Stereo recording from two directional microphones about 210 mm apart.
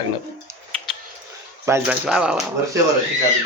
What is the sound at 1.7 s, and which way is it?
Speech, 10° right (ahead or behind).